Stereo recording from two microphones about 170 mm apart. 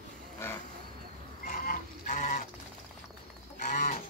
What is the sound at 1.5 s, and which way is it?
Duck, 55° left (ahead or behind).